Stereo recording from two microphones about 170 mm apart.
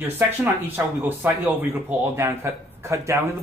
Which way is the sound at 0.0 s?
10° right (ahead or behind).